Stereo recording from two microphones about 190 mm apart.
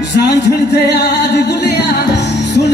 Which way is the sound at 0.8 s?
60° left (ahead or behind).